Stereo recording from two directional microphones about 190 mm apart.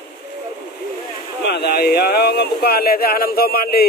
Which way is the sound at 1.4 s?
60° left (ahead or behind).